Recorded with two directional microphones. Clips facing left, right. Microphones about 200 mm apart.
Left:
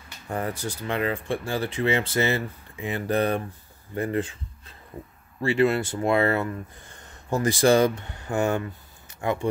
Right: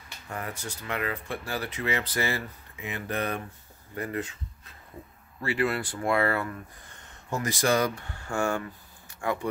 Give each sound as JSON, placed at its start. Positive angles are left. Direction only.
{"t": 0.3, "sound": "speech", "side_deg": 30}
{"t": 5.4, "sound": "speech", "side_deg": 25}